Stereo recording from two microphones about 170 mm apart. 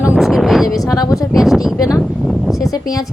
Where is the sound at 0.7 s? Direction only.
20° left (ahead or behind).